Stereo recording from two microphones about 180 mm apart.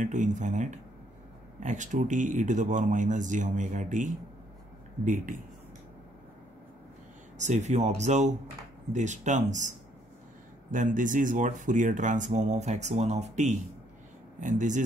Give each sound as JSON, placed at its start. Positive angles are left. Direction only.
{"t": 0.0, "sound": "speech", "side_deg": -45}
{"t": 7.3, "sound": "speech", "side_deg": -40}